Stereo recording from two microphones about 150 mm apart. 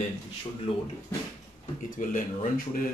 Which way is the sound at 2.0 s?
65° left (ahead or behind).